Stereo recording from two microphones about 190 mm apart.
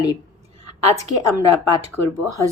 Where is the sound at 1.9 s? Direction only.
15° right (ahead or behind).